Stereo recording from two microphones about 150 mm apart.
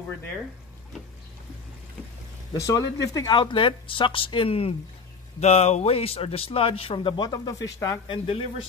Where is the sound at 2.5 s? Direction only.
20° left (ahead or behind).